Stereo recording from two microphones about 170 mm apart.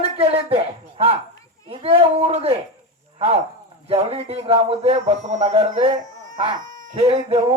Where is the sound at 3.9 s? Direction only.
35° right (ahead or behind).